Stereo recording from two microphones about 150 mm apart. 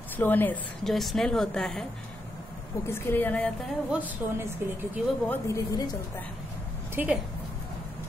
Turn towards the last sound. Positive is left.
turn(degrees=-10)  # may be behind; listen again after turning